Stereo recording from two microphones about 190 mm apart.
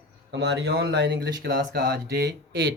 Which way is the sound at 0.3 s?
65° right (ahead or behind).